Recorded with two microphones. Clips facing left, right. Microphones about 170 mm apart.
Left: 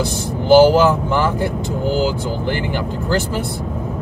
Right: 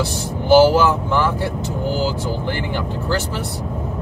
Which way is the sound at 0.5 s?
15° left (ahead or behind).